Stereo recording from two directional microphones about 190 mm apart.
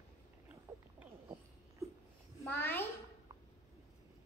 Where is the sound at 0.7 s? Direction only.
15° right (ahead or behind).